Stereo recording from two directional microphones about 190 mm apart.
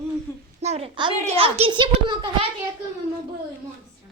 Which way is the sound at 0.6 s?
35° right (ahead or behind).